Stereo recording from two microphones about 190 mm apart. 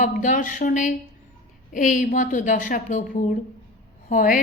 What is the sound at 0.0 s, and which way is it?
A woman's voice, 45° left (ahead or behind).